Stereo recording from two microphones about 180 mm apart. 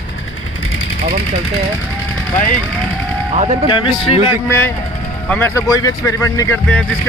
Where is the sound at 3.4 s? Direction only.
35° right (ahead or behind).